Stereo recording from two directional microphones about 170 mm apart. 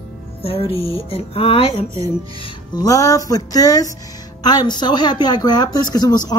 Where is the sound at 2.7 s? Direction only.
20° left (ahead or behind).